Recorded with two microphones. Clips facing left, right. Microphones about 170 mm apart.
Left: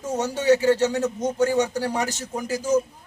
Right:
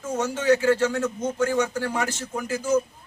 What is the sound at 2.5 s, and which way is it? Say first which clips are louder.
Speech: left 1 dB; 40° left (ahead or behind).